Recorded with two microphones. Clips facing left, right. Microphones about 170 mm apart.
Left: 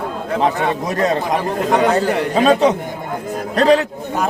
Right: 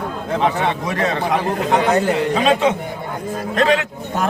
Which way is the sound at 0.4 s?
40° left (ahead or behind).